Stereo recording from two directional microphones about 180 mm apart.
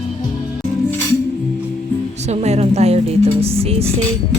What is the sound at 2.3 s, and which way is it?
A woman's voice, 35° right (ahead or behind).